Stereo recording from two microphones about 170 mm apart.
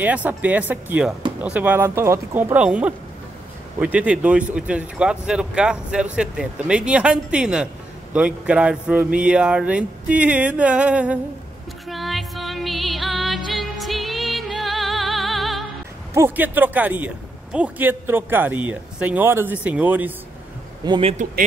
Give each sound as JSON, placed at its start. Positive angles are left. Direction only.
{"t": 0.0, "sound": "a man's voice", "side_deg": -10}
{"t": 11.9, "sound": "music", "side_deg": 0}
{"t": 16.2, "sound": "a man's voice", "side_deg": -10}
{"t": 20.8, "sound": "a man's voice", "side_deg": -30}